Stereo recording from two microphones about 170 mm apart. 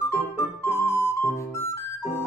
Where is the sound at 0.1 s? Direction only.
15° left (ahead or behind).